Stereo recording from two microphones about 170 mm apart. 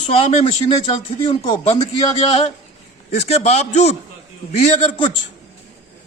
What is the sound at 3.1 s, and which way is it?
Speech, 40° left (ahead or behind).